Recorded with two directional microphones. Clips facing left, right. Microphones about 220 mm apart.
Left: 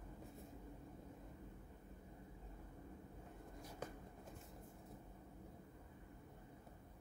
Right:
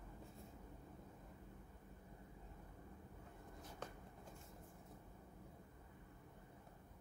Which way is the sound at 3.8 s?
10° left (ahead or behind).